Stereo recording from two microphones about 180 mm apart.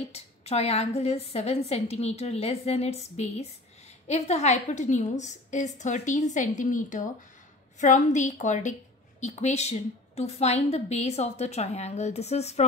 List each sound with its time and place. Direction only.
0.1 s a woman's voice: 35° left (ahead or behind)